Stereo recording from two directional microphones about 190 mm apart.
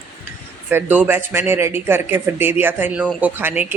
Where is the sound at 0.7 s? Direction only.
10° right (ahead or behind).